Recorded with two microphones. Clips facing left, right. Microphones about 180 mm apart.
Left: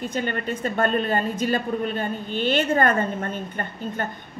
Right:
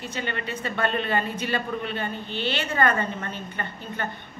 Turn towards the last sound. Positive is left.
turn(degrees=45)  # may be behind; listen again after turning